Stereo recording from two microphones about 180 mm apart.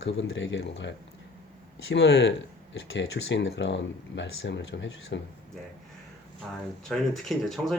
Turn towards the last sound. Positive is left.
turn(degrees=0)  # may be behind; listen again after turning